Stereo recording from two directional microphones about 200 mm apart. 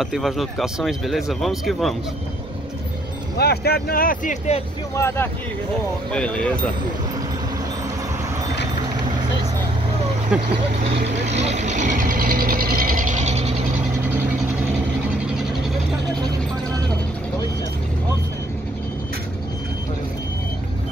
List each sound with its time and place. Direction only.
0.0 s speech: centre (ahead or behind)
3.3 s speech: 50° left (ahead or behind); by 4.6 s 35° left (ahead or behind)
4.9 s speech: 10° left (ahead or behind)
10.3 s speech: 5° right (ahead or behind)
10.8 s speech: 35° right (ahead or behind)